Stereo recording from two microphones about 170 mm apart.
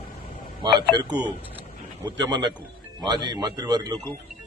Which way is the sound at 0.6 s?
25° right (ahead or behind).